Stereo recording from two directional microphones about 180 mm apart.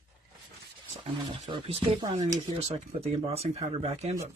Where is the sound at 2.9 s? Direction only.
35° right (ahead or behind).